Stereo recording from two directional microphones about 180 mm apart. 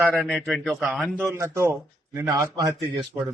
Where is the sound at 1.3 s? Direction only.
15° right (ahead or behind).